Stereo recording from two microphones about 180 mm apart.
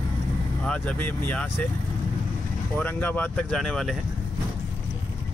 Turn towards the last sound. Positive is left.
turn(degrees=0)  # may be behind; listen again after turning